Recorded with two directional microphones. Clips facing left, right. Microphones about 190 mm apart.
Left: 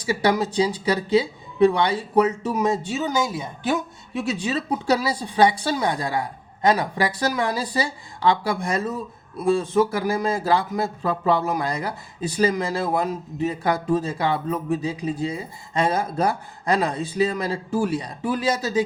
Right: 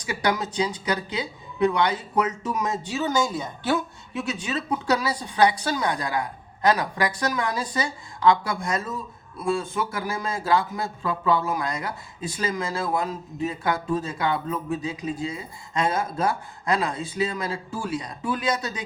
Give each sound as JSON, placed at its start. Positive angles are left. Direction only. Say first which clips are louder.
{"t": 0.0, "sound": "a woman's voice", "louder": "left 5 dB", "side_deg": 30}
{"t": 3.0, "sound": "a woman's voice", "louder": "even", "side_deg": 10}
{"t": 4.2, "sound": "a woman's voice", "louder": "left 4 dB", "side_deg": 30}